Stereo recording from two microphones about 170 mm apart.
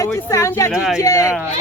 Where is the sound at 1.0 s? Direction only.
20° left (ahead or behind).